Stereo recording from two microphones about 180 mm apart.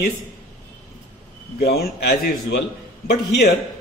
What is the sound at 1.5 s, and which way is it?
A man's voice, 60° left (ahead or behind).